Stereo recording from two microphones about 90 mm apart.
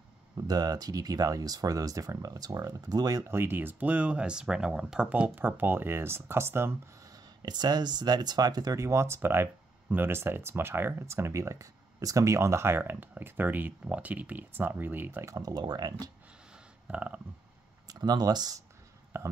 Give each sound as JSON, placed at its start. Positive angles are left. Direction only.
{"t": 0.5, "sound": "speech", "side_deg": -45}
{"t": 3.3, "sound": "speech", "side_deg": -25}
{"t": 5.1, "sound": "speech", "side_deg": -20}
{"t": 7.0, "sound": "speech", "side_deg": -45}
{"t": 15.2, "sound": "speech", "side_deg": -40}
{"t": 16.5, "sound": "a sound", "side_deg": -15}
{"t": 17.8, "sound": "speech", "side_deg": -50}
{"t": 19.1, "sound": "a sound", "side_deg": -35}